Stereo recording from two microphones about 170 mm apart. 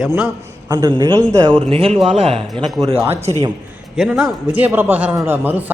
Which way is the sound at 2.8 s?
20° right (ahead or behind).